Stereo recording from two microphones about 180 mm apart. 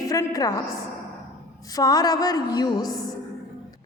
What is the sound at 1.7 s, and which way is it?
A woman's voice, 20° left (ahead or behind).